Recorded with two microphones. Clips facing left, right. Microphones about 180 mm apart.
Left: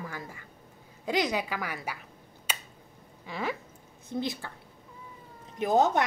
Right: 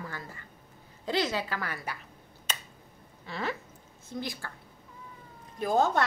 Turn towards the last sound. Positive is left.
turn(degrees=20)  # may be behind; listen again after turning